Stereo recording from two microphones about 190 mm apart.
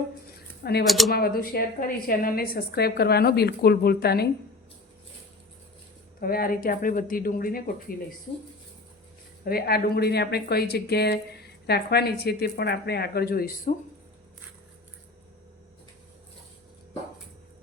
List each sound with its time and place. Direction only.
0.6 s speech: 60° left (ahead or behind)
0.9 s speech: centre (ahead or behind)
1.1 s speech: 50° left (ahead or behind)
6.1 s speech: 50° left (ahead or behind)
9.4 s speech: 55° left (ahead or behind)